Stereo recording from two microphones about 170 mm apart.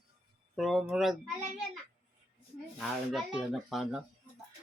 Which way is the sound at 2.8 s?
Centre (ahead or behind).